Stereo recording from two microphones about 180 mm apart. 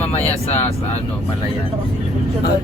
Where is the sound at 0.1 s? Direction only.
35° left (ahead or behind).